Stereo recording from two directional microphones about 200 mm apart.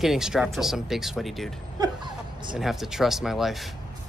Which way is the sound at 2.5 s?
Centre (ahead or behind).